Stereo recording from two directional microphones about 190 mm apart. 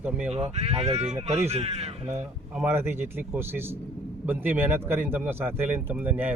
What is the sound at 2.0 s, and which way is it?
Speech, 10° right (ahead or behind).